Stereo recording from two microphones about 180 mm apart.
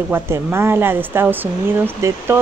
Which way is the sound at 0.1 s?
15° right (ahead or behind).